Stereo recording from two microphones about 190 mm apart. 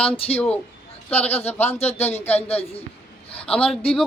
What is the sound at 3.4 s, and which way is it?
Speech, 5° left (ahead or behind).